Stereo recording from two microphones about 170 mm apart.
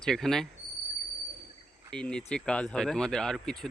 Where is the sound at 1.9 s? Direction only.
5° left (ahead or behind).